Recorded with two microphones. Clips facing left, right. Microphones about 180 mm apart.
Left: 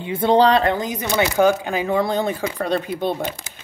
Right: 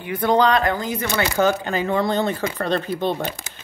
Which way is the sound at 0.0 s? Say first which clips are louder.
Left 2 dB; 25° left (ahead or behind).